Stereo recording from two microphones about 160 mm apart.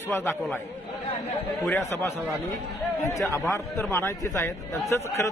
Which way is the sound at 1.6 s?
15° left (ahead or behind).